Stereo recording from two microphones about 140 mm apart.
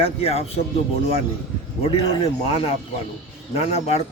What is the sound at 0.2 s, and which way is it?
Speech, 45° left (ahead or behind).